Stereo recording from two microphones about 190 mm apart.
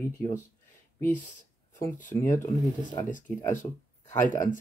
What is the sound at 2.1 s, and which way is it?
Speech, 15° left (ahead or behind).